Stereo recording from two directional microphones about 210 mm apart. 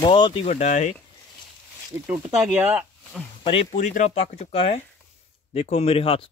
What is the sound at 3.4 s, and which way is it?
Speech, 25° left (ahead or behind).